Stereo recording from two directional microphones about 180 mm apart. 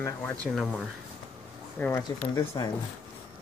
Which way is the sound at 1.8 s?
15° left (ahead or behind).